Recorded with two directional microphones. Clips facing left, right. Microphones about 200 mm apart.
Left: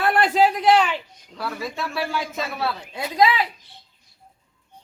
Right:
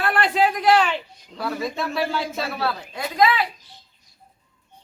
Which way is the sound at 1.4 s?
5° left (ahead or behind).